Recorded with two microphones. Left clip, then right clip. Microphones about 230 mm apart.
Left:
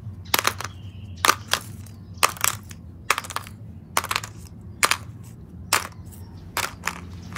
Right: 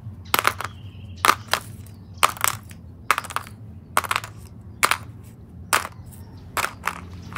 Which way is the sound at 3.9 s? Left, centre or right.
Centre.